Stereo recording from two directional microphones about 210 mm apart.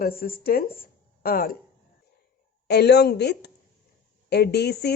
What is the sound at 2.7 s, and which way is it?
A woman's voice, 50° left (ahead or behind).